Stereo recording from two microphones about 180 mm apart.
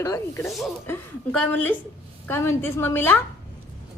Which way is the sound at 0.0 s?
15° left (ahead or behind).